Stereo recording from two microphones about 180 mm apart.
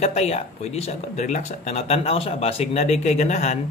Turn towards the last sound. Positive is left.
turn(degrees=40)  # may be behind; listen again after turning